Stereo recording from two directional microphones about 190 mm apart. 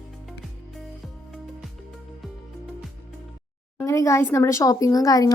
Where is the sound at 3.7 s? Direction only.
15° left (ahead or behind).